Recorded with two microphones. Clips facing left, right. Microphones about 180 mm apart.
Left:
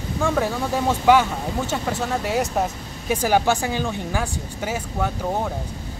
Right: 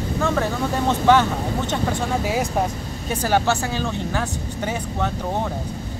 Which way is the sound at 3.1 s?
10° left (ahead or behind).